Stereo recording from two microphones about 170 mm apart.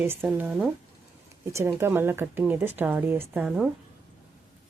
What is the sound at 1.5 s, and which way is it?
A woman's voice, 15° right (ahead or behind).